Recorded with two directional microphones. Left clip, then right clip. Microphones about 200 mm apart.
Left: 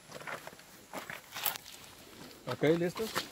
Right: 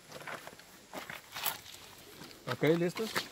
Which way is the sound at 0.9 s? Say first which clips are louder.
Left 1 dB; 40° left (ahead or behind).